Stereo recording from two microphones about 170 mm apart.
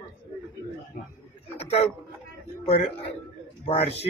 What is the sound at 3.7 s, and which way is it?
Speech, 35° left (ahead or behind).